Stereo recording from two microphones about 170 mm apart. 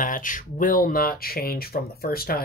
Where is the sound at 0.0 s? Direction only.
50° left (ahead or behind).